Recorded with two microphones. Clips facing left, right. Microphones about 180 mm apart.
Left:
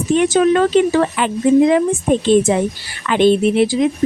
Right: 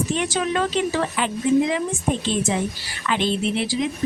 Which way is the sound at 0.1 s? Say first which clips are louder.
Left 10 dB; 55° left (ahead or behind).